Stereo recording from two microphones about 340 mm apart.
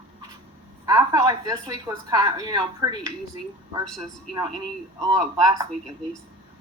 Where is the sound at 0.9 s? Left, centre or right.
Centre.